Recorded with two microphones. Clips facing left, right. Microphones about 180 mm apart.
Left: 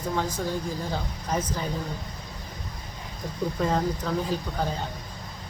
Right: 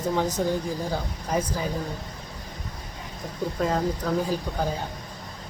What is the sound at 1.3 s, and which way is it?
Speech, 10° right (ahead or behind).